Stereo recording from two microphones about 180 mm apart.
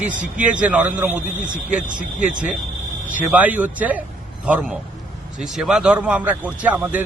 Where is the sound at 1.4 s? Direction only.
45° right (ahead or behind).